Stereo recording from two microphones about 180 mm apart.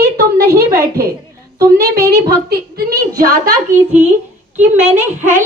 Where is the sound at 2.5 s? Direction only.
55° right (ahead or behind).